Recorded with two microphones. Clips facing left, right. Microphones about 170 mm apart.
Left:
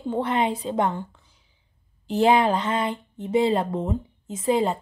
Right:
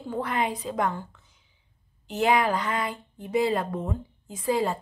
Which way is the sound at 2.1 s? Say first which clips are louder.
Left 4 dB; 30° left (ahead or behind).